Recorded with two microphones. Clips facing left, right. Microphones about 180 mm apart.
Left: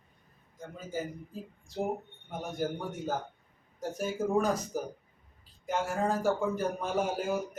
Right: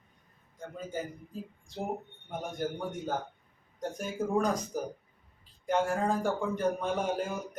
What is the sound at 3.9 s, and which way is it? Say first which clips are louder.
A man's voice: left 2 dB; 5° left (ahead or behind).